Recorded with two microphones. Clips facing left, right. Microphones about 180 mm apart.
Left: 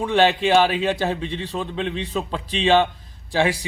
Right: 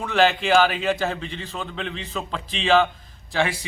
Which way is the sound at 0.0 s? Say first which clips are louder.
Left 2 dB; 35° left (ahead or behind).